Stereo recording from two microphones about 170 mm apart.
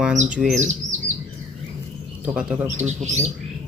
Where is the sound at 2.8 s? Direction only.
45° right (ahead or behind).